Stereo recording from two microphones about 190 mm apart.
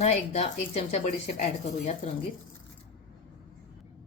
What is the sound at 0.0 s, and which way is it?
A woman's voice, 35° left (ahead or behind).